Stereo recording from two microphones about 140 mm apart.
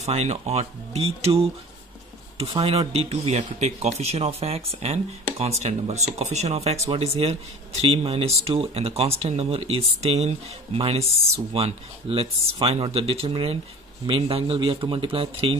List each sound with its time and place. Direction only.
0.0 s speech: 50° right (ahead or behind)
2.6 s speech: 45° right (ahead or behind)